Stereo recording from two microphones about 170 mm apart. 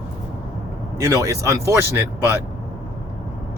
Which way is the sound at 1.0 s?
20° right (ahead or behind).